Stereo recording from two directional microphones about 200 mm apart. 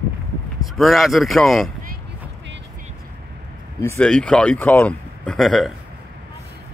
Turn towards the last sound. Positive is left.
turn(degrees=0)  # may be behind; listen again after turning